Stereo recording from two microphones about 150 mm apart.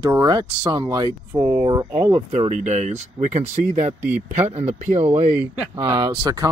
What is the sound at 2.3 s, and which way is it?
Speech, 50° right (ahead or behind).